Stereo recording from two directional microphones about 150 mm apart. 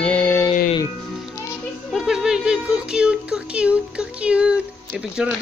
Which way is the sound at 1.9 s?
5° right (ahead or behind).